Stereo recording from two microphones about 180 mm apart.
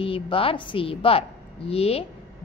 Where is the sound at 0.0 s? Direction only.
30° left (ahead or behind).